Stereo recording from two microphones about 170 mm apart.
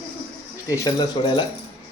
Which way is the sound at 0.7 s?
25° left (ahead or behind).